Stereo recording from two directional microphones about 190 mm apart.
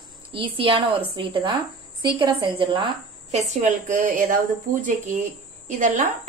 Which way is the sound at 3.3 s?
40° right (ahead or behind).